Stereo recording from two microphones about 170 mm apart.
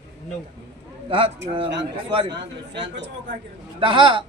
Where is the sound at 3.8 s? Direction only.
30° right (ahead or behind).